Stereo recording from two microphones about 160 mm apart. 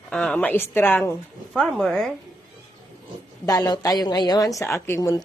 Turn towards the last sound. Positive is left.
turn(degrees=15)  # may be behind; listen again after turning